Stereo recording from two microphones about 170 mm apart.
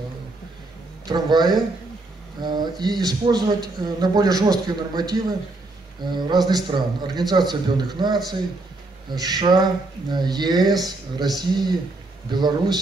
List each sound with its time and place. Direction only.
1.0 s speech: 25° right (ahead or behind)